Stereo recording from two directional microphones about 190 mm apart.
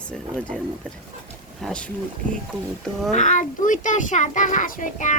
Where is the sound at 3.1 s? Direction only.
40° left (ahead or behind).